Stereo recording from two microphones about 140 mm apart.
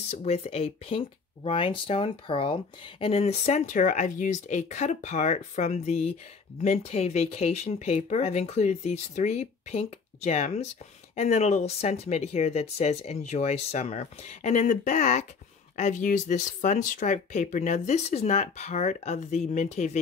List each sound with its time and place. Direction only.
0.1 s speech: 50° left (ahead or behind)